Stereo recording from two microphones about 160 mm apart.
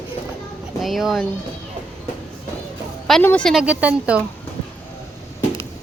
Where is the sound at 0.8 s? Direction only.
Centre (ahead or behind).